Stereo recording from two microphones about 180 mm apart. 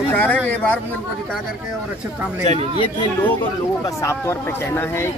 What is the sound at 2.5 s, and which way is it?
Speech, 35° right (ahead or behind).